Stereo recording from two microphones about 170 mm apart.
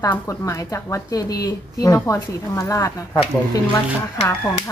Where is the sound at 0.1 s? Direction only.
15° left (ahead or behind).